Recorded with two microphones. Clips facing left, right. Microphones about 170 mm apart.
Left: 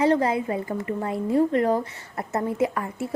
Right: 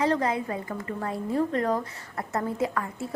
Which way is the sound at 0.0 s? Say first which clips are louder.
Left 4 dB; 30° left (ahead or behind).